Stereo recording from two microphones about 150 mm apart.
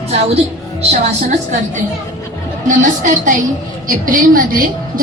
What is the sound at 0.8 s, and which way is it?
Speech, 45° right (ahead or behind).